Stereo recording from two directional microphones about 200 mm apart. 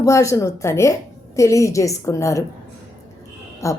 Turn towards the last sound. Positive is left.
turn(degrees=15)  # may be behind; listen again after turning